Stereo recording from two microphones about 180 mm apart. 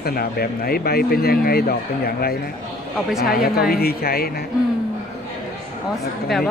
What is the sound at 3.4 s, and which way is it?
Speech, 55° left (ahead or behind).